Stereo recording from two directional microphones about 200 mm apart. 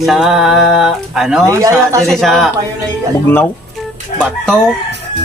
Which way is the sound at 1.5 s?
15° right (ahead or behind).